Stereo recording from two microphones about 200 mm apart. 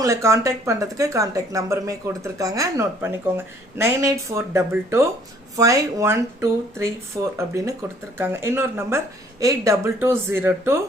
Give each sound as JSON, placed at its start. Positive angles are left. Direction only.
{"t": 0.0, "sound": "a woman's voice", "side_deg": -15}